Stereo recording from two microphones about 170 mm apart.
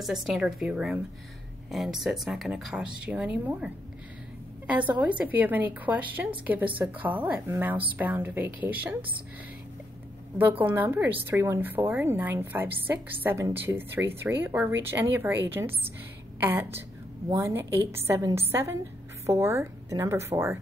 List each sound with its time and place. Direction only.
0.0 s speech: centre (ahead or behind)
5.0 s a woman's voice: 10° right (ahead or behind)
10.6 s a woman's voice: 10° right (ahead or behind)